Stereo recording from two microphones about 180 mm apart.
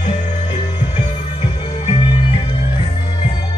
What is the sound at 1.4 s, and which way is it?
Music, 30° left (ahead or behind).